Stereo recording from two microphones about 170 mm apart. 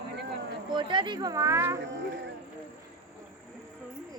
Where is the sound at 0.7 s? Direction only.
25° right (ahead or behind).